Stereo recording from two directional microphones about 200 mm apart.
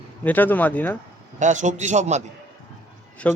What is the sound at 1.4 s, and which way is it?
Speech, 40° right (ahead or behind).